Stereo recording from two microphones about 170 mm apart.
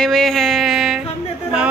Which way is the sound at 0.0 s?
Centre (ahead or behind).